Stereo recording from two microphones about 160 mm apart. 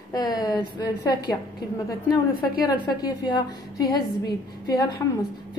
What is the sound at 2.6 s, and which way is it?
A woman's voice, 25° left (ahead or behind).